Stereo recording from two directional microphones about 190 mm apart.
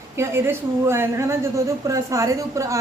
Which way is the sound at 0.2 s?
15° right (ahead or behind).